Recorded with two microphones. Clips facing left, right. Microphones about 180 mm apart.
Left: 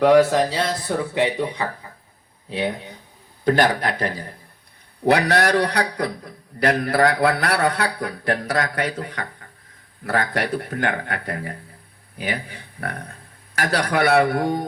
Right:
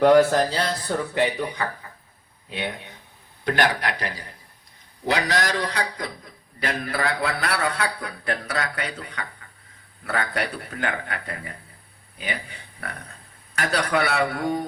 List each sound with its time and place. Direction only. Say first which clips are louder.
0.0 s speech: left 1 dB; centre (ahead or behind)
1.1 s a man's voice: left 2 dB; 20° left (ahead or behind); by 4.4 s 50° left (ahead or behind)
5.0 s a man's voice: left 6 dB; 60° left (ahead or behind)